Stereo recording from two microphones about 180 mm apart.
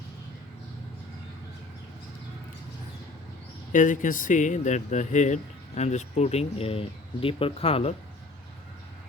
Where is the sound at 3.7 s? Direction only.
45° left (ahead or behind).